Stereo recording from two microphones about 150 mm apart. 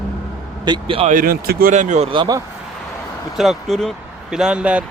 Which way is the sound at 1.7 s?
55° right (ahead or behind).